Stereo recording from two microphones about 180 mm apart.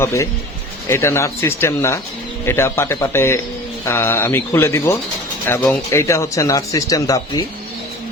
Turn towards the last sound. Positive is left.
turn(degrees=20)  # may be behind; listen again after turning